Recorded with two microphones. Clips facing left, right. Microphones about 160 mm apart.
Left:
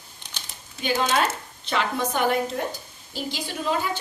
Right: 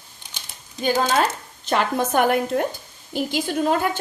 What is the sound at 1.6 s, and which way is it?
A woman's voice, 50° right (ahead or behind).